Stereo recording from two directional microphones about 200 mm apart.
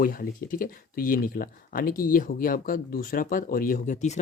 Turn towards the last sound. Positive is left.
turn(degrees=35)  # may be behind; listen again after turning